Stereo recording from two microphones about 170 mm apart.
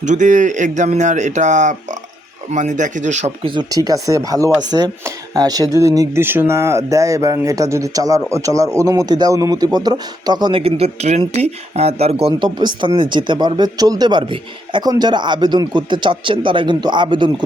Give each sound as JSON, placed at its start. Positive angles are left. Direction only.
{"t": 0.0, "sound": "speech", "side_deg": -45}
{"t": 3.4, "sound": "speech", "side_deg": -25}